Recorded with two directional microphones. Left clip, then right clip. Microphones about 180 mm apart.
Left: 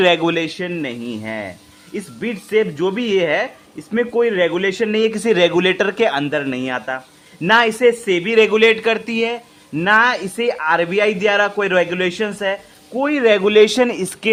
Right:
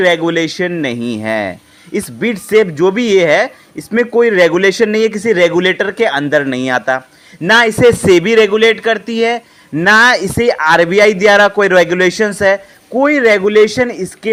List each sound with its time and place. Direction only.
0.0 s speech: 5° right (ahead or behind)
0.3 s a man's voice: 25° right (ahead or behind)
8.0 s speech: 30° right (ahead or behind)
8.4 s a man's voice: 10° right (ahead or behind)
13.2 s speech: 5° right (ahead or behind)